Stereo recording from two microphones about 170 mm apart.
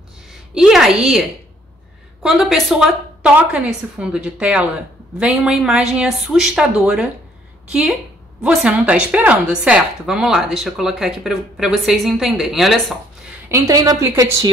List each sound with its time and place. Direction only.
0.6 s a woman's voice: 5° right (ahead or behind)
2.2 s a woman's voice: 5° right (ahead or behind)
13.5 s a woman's voice: 20° right (ahead or behind)